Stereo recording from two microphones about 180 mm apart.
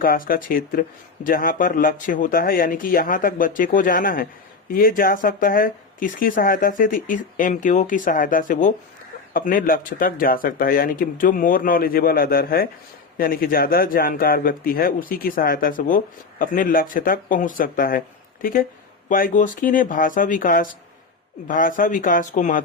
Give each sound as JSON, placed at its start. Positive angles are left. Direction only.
{"t": 0.0, "sound": "speech", "side_deg": 50}